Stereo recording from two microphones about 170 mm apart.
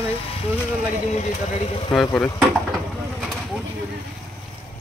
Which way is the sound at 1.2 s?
45° left (ahead or behind).